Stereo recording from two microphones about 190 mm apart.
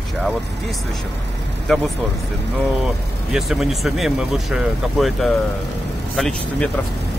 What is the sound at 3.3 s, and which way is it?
Speech, centre (ahead or behind).